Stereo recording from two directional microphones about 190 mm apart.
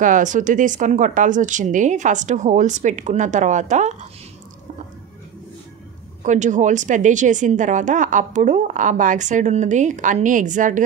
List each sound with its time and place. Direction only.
0.0 s a woman's voice: 40° right (ahead or behind)
6.2 s a woman's voice: 40° right (ahead or behind)